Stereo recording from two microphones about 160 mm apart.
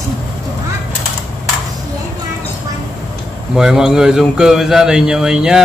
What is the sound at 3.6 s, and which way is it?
A man's voice, 5° right (ahead or behind).